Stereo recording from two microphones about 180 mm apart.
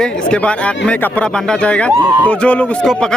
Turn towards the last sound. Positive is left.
turn(degrees=5)  # may be behind; listen again after turning